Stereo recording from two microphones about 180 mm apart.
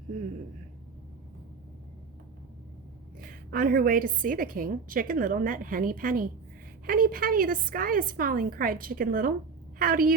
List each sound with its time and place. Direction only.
3.5 s a woman's voice: 55° right (ahead or behind)